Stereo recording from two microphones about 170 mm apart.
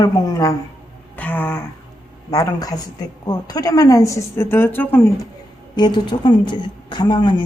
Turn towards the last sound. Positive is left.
turn(degrees=25)  # may be behind; listen again after turning